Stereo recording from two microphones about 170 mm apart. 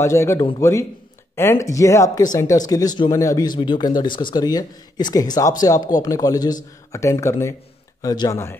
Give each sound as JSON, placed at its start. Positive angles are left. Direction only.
{"t": 0.0, "sound": "speech", "side_deg": 15}